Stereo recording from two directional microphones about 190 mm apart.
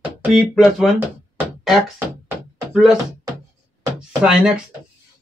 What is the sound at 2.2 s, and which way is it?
Knock, 5° right (ahead or behind).